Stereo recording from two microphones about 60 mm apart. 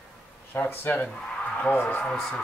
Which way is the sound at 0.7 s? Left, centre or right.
Left.